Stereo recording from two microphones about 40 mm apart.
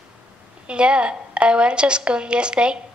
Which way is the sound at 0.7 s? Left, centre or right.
Right.